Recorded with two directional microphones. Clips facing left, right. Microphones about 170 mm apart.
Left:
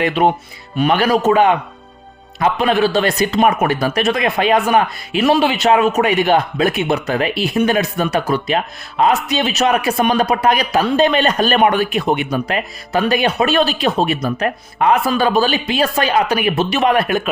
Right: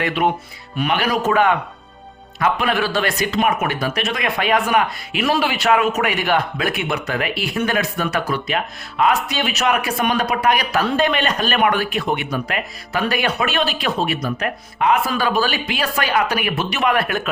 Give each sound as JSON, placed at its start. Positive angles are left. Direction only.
{"t": 0.8, "sound": "speech", "side_deg": 30}
{"t": 11.2, "sound": "speech", "side_deg": 35}
{"t": 13.5, "sound": "speech", "side_deg": 35}
{"t": 15.4, "sound": "speech", "side_deg": 25}